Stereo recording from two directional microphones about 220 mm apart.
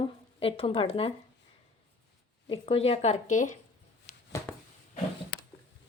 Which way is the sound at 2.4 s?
25° left (ahead or behind).